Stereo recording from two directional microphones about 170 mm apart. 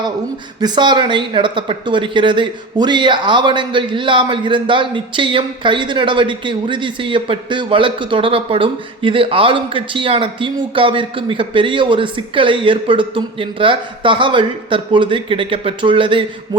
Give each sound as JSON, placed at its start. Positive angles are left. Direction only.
{"t": 0.6, "sound": "speech", "side_deg": -25}